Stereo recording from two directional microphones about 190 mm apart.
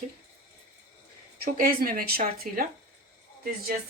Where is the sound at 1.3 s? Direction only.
50° right (ahead or behind).